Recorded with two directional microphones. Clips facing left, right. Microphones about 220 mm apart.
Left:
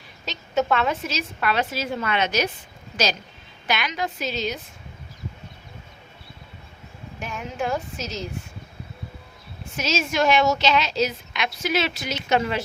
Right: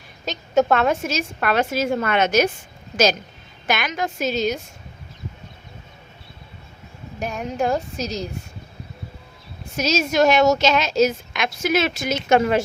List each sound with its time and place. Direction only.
0.3 s a woman's voice: 45° right (ahead or behind)
7.2 s a woman's voice: 40° right (ahead or behind)
9.7 s a woman's voice: 40° right (ahead or behind)